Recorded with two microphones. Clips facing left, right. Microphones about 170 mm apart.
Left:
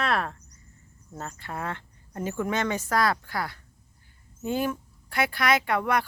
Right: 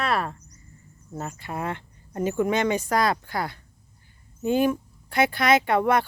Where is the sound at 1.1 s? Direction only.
10° right (ahead or behind).